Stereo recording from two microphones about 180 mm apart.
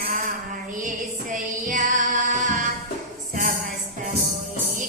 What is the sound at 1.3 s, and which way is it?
Music, 45° right (ahead or behind).